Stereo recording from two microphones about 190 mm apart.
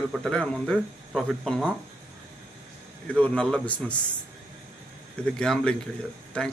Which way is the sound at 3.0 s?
5° left (ahead or behind).